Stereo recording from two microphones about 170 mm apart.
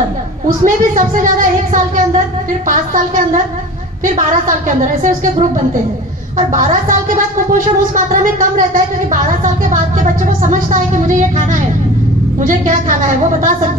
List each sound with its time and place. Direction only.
0.7 s a woman's voice: 50° right (ahead or behind)
6.3 s a woman's voice: 50° right (ahead or behind)